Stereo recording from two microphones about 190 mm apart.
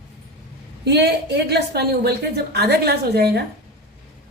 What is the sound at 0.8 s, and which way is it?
A woman's voice, 60° right (ahead or behind).